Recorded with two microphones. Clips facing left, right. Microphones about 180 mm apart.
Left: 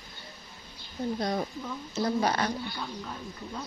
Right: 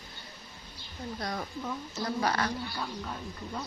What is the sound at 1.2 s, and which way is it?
A woman's voice, 25° left (ahead or behind).